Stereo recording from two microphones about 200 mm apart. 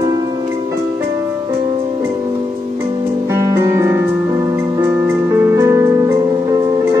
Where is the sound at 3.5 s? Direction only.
15° right (ahead or behind).